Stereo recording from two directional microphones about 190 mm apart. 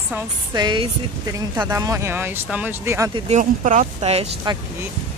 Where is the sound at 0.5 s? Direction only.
25° right (ahead or behind).